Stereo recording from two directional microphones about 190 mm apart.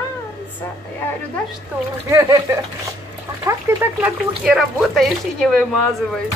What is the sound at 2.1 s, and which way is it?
Speech, 15° right (ahead or behind).